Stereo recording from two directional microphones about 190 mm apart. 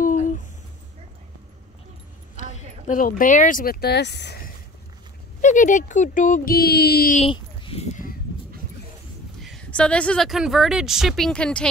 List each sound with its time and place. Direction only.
0.0 s a sound: 45° left (ahead or behind)
2.3 s speech: 40° left (ahead or behind); by 4.4 s 65° left (ahead or behind)
5.4 s speech: 40° left (ahead or behind)
7.2 s speech: 30° left (ahead or behind)
9.4 s speech: 5° left (ahead or behind)